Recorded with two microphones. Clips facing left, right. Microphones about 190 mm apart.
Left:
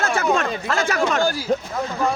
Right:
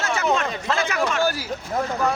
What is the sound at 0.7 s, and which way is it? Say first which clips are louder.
Speech: left 4 dB; 40° left (ahead or behind).